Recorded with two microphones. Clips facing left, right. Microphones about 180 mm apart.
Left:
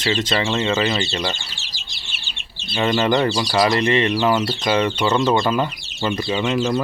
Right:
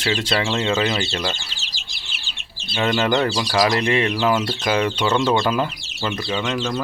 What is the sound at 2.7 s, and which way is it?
Speech, centre (ahead or behind).